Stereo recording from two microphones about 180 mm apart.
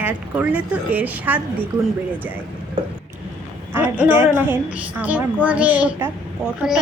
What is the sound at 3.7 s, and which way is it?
Speech, 10° right (ahead or behind).